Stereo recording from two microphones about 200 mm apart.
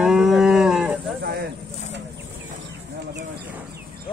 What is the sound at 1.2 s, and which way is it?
Speech, 50° right (ahead or behind).